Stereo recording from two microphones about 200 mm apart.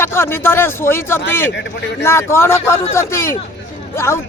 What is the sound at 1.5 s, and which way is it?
Speech, 60° left (ahead or behind).